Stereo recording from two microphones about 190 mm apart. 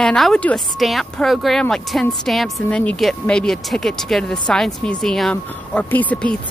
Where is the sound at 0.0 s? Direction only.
5° left (ahead or behind).